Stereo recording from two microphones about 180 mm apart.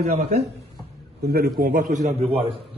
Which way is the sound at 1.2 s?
60° right (ahead or behind).